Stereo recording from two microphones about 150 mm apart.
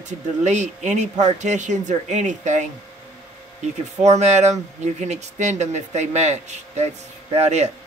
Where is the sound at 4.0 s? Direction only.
50° right (ahead or behind).